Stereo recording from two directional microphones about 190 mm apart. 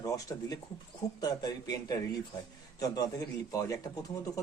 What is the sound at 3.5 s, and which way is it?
Speech, 15° left (ahead or behind).